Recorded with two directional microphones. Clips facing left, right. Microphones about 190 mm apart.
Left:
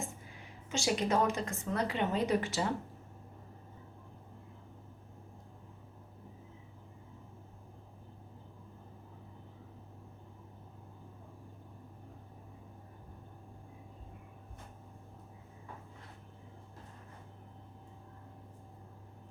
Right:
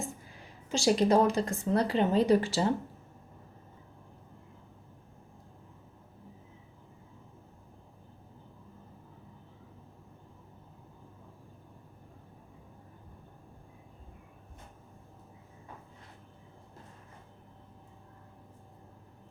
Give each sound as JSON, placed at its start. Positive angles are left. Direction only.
{"t": 0.7, "sound": "a woman's voice", "side_deg": -35}